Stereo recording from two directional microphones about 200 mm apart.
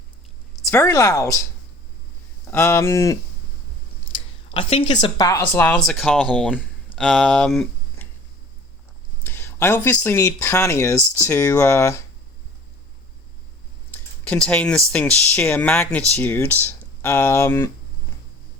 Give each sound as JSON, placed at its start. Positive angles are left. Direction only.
{"t": 0.7, "sound": "speech", "side_deg": 15}
{"t": 2.5, "sound": "speech", "side_deg": 15}
{"t": 4.5, "sound": "speech", "side_deg": 25}
{"t": 5.4, "sound": "speech", "side_deg": 10}
{"t": 9.2, "sound": "speech", "side_deg": 10}
{"t": 13.9, "sound": "a sound", "side_deg": 5}
{"t": 14.9, "sound": "speech", "side_deg": 5}